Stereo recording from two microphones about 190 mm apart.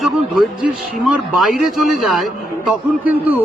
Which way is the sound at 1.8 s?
Centre (ahead or behind).